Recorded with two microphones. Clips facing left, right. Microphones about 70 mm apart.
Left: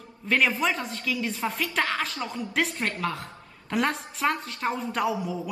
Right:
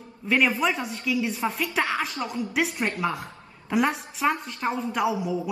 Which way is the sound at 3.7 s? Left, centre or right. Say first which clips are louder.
Right 2 dB; centre.